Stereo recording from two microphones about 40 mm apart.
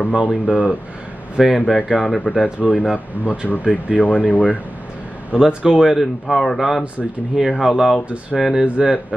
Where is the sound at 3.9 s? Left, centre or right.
Left.